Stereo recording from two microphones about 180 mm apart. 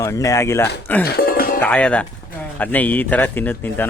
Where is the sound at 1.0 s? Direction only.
60° left (ahead or behind).